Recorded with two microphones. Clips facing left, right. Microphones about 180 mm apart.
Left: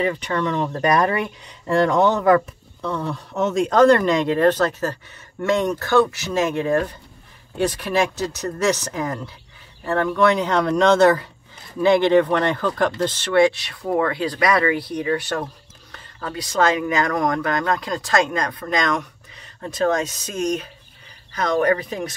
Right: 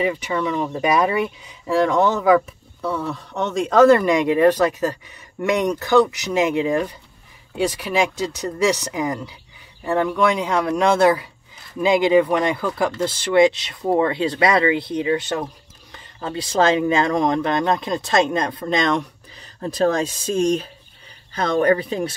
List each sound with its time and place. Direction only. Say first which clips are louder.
0.0 s speech: even; 10° right (ahead or behind); by 22.1 s 30° right (ahead or behind)